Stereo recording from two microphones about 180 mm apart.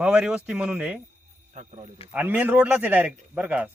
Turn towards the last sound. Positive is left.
turn(degrees=-5)  # may be behind; listen again after turning